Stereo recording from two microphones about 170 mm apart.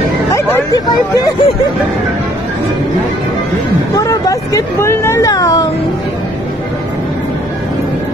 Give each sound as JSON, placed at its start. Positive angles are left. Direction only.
{"t": 0.3, "sound": "speech", "side_deg": 15}
{"t": 3.9, "sound": "speech", "side_deg": 20}